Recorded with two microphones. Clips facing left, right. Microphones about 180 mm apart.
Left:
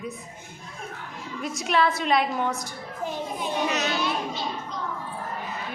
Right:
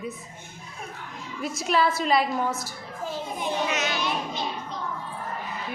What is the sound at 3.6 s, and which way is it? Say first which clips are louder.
Speech: left 1 dB; 35° left (ahead or behind).